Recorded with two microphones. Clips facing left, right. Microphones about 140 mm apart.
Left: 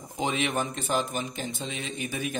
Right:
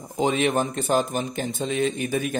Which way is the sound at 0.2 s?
40° right (ahead or behind).